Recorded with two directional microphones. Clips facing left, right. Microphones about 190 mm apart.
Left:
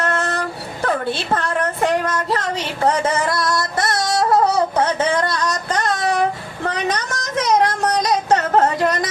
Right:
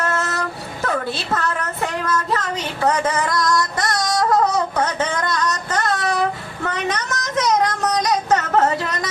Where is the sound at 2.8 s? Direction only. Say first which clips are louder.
Left 1 dB; 30° left (ahead or behind).